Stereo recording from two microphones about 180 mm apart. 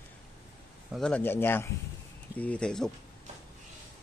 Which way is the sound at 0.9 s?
5° left (ahead or behind).